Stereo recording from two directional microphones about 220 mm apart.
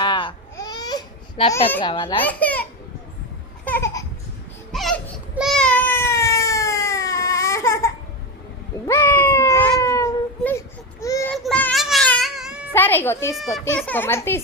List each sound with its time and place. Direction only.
0.0 s babbling: 20° left (ahead or behind)
1.8 s a child's voice: 20° left (ahead or behind)
2.2 s a child's voice: 5° left (ahead or behind)
3.6 s a sound: 10° left (ahead or behind)
4.7 s baby cry: centre (ahead or behind)
8.9 s cat: 10° left (ahead or behind)
11.0 s child singing: 15° left (ahead or behind)
11.3 s a sound: 5° left (ahead or behind)
12.7 s a child's voice: 10° left (ahead or behind)